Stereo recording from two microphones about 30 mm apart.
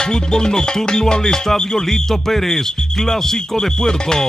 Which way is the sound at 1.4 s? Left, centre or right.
Centre.